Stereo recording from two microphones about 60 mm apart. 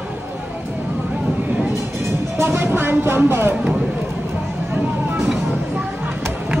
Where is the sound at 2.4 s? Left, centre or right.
Right.